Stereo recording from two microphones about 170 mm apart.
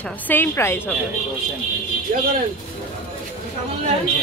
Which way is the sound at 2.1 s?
55° right (ahead or behind).